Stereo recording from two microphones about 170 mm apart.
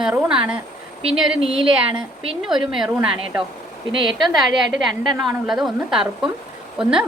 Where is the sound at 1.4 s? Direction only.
35° right (ahead or behind).